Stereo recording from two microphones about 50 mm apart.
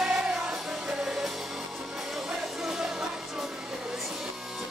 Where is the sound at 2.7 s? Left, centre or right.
Centre.